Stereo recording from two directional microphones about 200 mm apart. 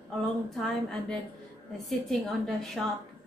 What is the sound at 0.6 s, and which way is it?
Speech, 5° left (ahead or behind).